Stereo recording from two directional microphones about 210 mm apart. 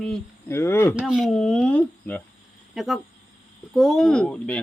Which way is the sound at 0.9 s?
Centre (ahead or behind).